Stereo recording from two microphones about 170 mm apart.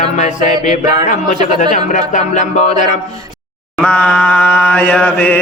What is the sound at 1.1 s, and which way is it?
Mantra, 50° left (ahead or behind).